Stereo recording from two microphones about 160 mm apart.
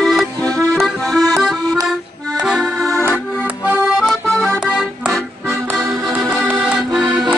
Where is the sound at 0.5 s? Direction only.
20° right (ahead or behind).